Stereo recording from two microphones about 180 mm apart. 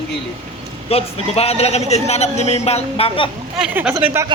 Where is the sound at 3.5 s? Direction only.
5° right (ahead or behind).